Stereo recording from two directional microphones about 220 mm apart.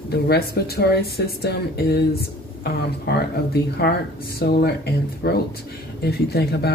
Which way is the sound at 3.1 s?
50° left (ahead or behind).